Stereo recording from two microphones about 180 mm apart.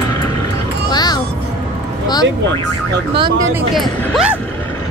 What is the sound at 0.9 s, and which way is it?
Music, 20° left (ahead or behind).